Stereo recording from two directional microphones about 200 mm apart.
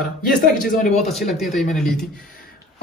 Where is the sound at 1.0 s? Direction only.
Centre (ahead or behind).